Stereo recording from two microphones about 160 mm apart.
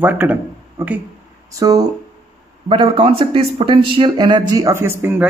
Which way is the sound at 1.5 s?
20° right (ahead or behind).